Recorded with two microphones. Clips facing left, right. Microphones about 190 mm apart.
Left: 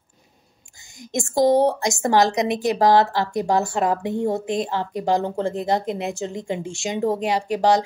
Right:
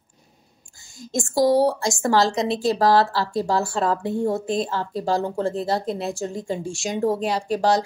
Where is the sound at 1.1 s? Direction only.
20° left (ahead or behind).